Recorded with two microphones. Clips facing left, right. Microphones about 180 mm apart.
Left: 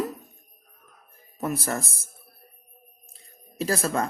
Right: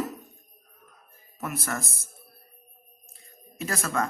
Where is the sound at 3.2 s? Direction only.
35° left (ahead or behind).